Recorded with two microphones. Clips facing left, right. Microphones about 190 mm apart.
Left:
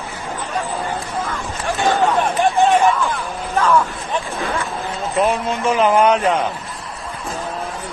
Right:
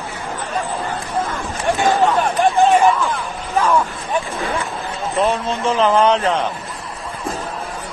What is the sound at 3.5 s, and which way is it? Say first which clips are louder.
Vehicle: even; 15° right (ahead or behind).